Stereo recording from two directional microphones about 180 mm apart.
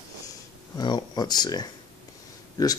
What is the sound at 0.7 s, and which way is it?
Speech, 25° left (ahead or behind).